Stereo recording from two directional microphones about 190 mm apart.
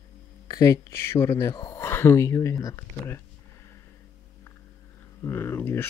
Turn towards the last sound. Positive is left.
turn(degrees=10)  # may be behind; listen again after turning